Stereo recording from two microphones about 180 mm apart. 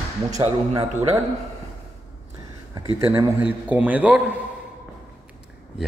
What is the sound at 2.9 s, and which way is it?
Speech, 30° right (ahead or behind).